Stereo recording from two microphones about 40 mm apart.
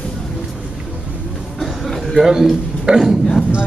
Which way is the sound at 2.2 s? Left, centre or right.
Centre.